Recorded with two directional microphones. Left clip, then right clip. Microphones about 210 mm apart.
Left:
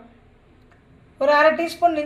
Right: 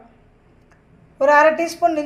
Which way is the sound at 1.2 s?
10° right (ahead or behind).